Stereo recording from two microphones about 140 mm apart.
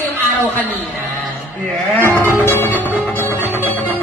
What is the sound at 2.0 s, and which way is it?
Music, 15° left (ahead or behind).